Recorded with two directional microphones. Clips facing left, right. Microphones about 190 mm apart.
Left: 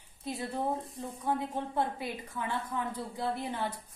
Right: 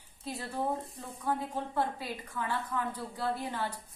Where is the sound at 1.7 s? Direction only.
20° left (ahead or behind).